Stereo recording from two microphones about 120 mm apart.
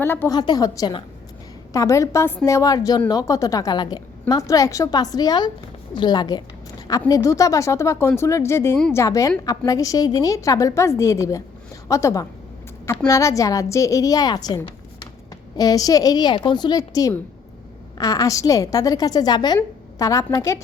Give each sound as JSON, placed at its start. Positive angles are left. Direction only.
{"t": 0.0, "sound": "a woman's voice", "side_deg": 20}
{"t": 0.3, "sound": "a woman's voice", "side_deg": 35}
{"t": 5.9, "sound": "a sound", "side_deg": 40}
{"t": 7.1, "sound": "a woman's voice", "side_deg": 25}